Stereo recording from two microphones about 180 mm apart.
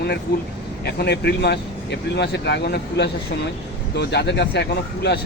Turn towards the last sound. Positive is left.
turn(degrees=70)  # may be behind; listen again after turning